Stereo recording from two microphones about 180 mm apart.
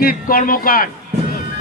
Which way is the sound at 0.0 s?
55° left (ahead or behind).